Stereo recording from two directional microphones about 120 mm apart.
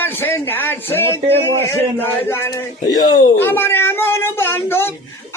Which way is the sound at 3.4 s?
20° left (ahead or behind).